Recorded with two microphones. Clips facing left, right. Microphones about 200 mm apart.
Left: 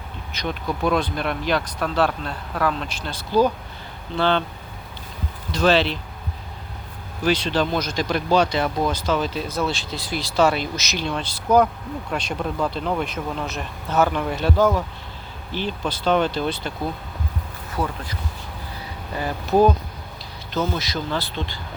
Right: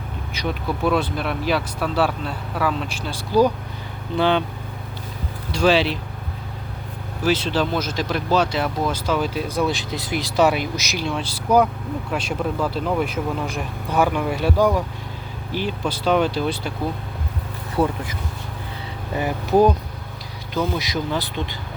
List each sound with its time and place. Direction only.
0.3 s speech: 5° right (ahead or behind)
5.5 s speech: 10° right (ahead or behind)
7.2 s speech: 5° right (ahead or behind)
17.8 s speech: 25° right (ahead or behind)
19.1 s speech: 15° right (ahead or behind)